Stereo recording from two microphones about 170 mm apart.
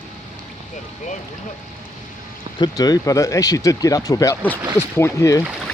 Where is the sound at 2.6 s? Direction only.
25° left (ahead or behind).